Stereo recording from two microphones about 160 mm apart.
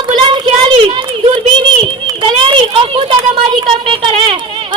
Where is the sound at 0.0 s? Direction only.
30° right (ahead or behind).